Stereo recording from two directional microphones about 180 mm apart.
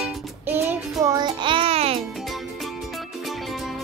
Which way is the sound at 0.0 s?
10° right (ahead or behind).